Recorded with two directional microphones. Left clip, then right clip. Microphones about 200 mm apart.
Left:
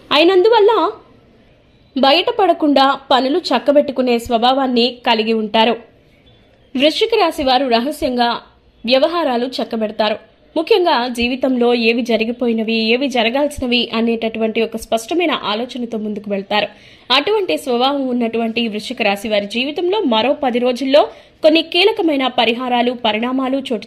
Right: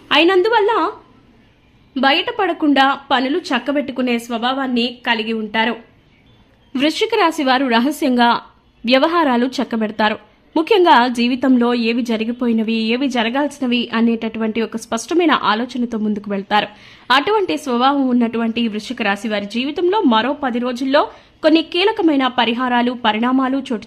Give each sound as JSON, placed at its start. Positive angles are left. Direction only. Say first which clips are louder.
{"t": 0.1, "sound": "a woman's voice", "louder": "left 2 dB", "side_deg": 0}
{"t": 2.0, "sound": "a woman's voice", "louder": "left 3 dB", "side_deg": 5}
{"t": 6.7, "sound": "a woman's voice", "louder": "left 3 dB", "side_deg": -15}